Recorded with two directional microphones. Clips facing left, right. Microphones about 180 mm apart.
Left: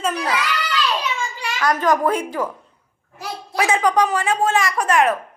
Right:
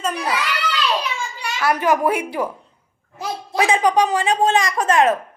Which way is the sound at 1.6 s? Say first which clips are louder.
Even; 10° right (ahead or behind).